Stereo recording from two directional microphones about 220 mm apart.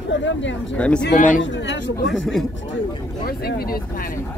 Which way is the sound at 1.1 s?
35° left (ahead or behind).